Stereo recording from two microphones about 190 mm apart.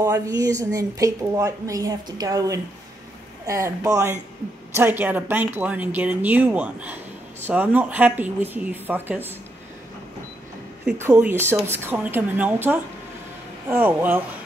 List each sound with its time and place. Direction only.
0.0 s a woman's voice: 20° right (ahead or behind)
10.9 s a woman's voice: 10° right (ahead or behind)